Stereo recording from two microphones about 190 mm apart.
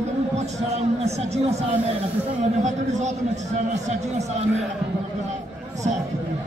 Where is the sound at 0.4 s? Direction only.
35° right (ahead or behind).